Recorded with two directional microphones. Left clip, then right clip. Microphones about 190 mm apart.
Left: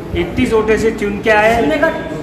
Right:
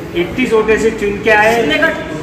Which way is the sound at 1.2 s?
10° left (ahead or behind).